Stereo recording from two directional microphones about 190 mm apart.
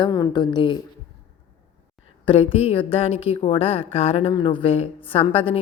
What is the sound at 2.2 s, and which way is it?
A woman's voice, 30° left (ahead or behind).